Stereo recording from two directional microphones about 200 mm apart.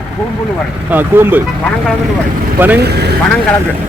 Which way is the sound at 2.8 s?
55° right (ahead or behind).